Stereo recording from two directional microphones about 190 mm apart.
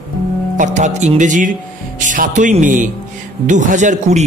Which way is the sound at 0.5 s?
40° right (ahead or behind).